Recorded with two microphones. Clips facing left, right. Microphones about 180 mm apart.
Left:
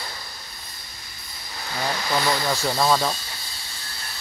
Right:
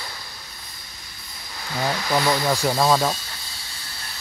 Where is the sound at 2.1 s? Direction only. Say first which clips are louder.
Right 3 dB; 10° right (ahead or behind).